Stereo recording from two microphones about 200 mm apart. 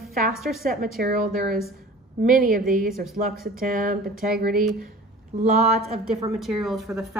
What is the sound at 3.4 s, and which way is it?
Speech, 45° right (ahead or behind).